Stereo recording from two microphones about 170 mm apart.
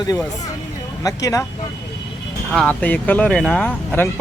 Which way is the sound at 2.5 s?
5° left (ahead or behind).